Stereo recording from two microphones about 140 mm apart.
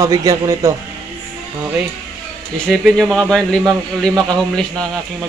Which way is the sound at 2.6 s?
Centre (ahead or behind).